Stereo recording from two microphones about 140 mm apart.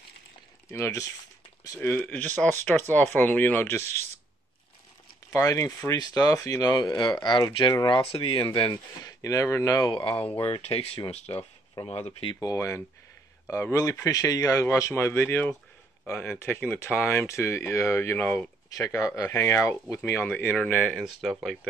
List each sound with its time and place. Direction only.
0.7 s speech: 20° left (ahead or behind)
5.3 s speech: 20° left (ahead or behind)
9.0 s speech: 25° left (ahead or behind)
10.4 s speech: 45° left (ahead or behind)
12.4 s speech: 25° left (ahead or behind)
18.7 s speech: 25° left (ahead or behind); by 21.4 s centre (ahead or behind)